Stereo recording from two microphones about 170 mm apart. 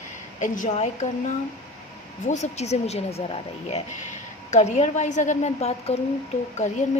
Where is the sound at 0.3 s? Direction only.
50° left (ahead or behind).